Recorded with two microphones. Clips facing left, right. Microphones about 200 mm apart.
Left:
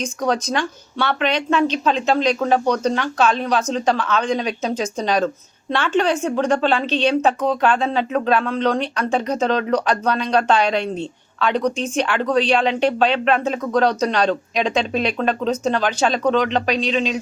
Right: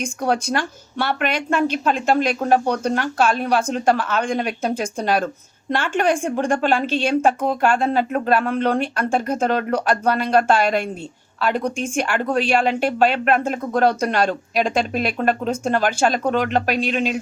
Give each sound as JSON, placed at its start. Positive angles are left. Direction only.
{"t": 0.0, "sound": "speech", "side_deg": -10}